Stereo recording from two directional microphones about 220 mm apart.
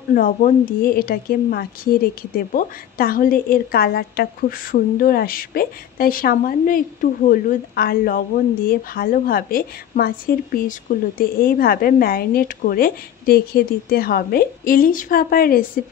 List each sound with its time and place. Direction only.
0.1 s a woman's voice: 40° left (ahead or behind)